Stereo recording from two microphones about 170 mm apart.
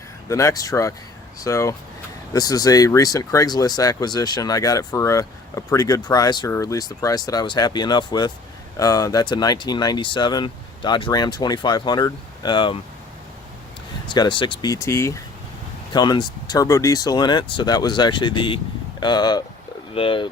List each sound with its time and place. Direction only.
0.3 s speech: 20° left (ahead or behind)
14.1 s speech: 25° left (ahead or behind)